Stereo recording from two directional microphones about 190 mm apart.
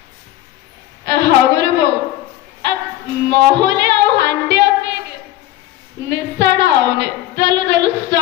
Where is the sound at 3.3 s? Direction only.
65° right (ahead or behind).